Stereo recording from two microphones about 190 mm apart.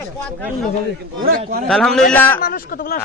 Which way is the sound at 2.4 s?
50° left (ahead or behind).